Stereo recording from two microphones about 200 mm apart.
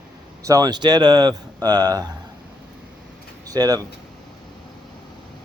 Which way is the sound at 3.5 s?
20° right (ahead or behind).